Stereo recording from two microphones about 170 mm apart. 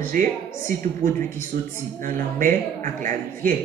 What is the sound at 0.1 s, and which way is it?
A woman's voice, 50° right (ahead or behind).